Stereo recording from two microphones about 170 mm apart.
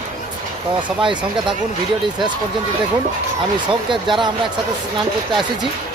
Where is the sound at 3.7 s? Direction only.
30° right (ahead or behind).